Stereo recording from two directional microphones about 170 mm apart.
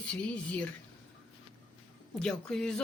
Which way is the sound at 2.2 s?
5° left (ahead or behind).